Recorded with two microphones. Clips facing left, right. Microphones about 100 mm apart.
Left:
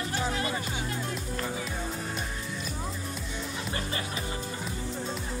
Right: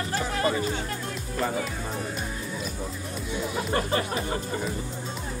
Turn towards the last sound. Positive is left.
turn(degrees=-50)  # may be behind; listen again after turning